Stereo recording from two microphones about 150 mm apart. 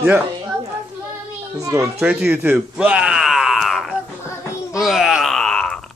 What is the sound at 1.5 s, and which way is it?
A child's voice, 20° right (ahead or behind).